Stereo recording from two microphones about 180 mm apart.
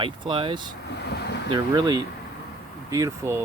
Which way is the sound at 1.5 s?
25° right (ahead or behind).